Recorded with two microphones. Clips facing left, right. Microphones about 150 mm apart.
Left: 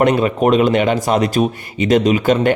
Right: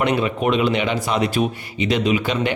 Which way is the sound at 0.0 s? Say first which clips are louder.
Left 6 dB; 45° left (ahead or behind).